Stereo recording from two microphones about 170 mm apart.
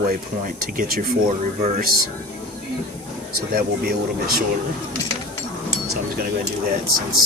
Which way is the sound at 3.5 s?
65° right (ahead or behind).